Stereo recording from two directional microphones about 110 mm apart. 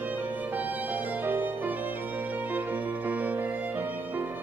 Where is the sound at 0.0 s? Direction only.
15° right (ahead or behind).